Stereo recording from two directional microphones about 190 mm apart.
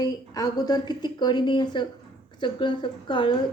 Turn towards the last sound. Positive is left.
turn(degrees=25)  # may be behind; listen again after turning